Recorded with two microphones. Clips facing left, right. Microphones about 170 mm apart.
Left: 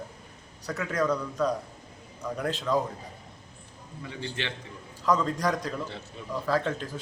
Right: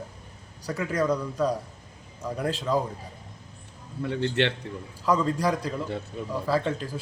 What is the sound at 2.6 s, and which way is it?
Speech, 10° right (ahead or behind).